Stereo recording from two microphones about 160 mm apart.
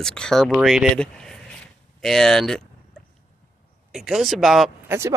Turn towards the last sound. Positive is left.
turn(degrees=-20)  # may be behind; listen again after turning